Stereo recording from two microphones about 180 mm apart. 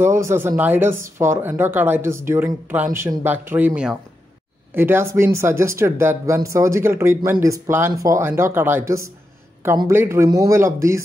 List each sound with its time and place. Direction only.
0.0 s speech: 15° right (ahead or behind)